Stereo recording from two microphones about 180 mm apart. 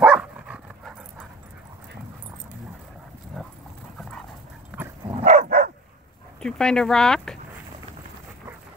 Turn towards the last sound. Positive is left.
turn(degrees=5)  # may be behind; listen again after turning